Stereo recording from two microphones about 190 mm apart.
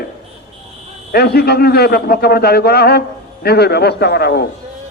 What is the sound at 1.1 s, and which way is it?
A man's voice, 55° left (ahead or behind).